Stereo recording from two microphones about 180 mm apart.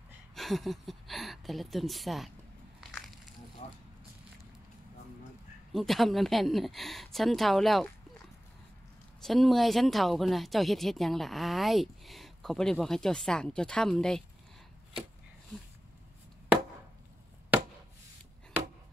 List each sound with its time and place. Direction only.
0.3 s speech: centre (ahead or behind)
3.6 s a sound: 35° left (ahead or behind)
5.7 s speech: centre (ahead or behind)
9.2 s speech: centre (ahead or behind)